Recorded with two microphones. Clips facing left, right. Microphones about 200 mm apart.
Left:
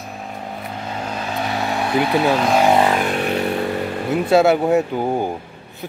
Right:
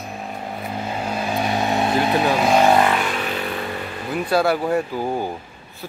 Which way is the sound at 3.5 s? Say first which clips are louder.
Left 6 dB; 40° left (ahead or behind).